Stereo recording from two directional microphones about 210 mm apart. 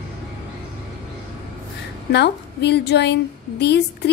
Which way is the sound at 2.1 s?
55° left (ahead or behind).